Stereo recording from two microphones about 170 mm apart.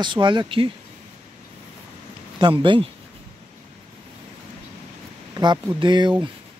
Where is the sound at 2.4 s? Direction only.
30° right (ahead or behind).